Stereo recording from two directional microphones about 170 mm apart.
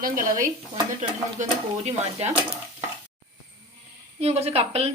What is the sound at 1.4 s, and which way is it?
A woman's voice, 40° right (ahead or behind).